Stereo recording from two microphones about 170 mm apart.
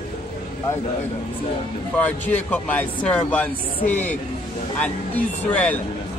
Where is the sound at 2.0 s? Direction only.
10° left (ahead or behind).